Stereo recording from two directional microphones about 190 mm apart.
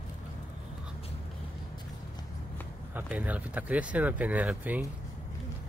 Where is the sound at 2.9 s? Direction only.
10° right (ahead or behind).